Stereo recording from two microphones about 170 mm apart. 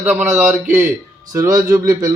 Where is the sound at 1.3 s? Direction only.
20° right (ahead or behind).